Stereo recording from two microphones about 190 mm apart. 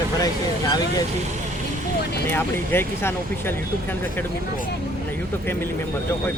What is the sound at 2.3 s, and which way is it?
Speech, 10° left (ahead or behind).